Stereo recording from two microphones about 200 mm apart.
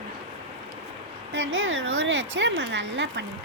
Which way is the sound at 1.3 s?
65° right (ahead or behind).